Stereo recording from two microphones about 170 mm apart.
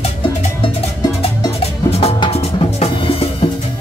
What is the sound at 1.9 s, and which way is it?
Music, 35° left (ahead or behind).